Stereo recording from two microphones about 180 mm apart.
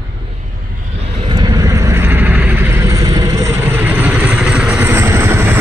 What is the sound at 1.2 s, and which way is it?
Vehicle, 30° right (ahead or behind).